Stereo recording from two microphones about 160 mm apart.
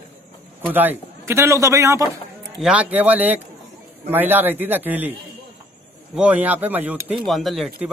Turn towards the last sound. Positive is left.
turn(degrees=0)  # may be behind; listen again after turning